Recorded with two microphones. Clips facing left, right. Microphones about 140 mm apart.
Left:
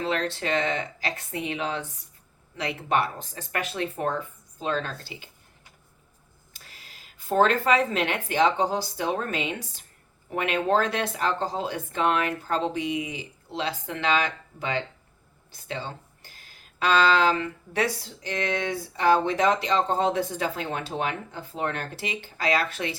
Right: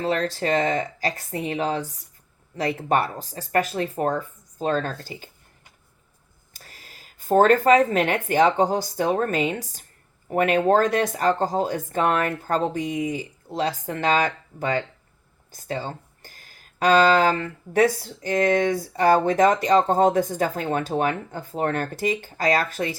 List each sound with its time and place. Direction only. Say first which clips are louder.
0.0 s speech: right 4 dB; 40° right (ahead or behind)
6.5 s speech: right 3 dB; 45° right (ahead or behind)
15.6 s a sound: right 5 dB; 40° right (ahead or behind)
16.8 s speech: right 4 dB; 45° right (ahead or behind)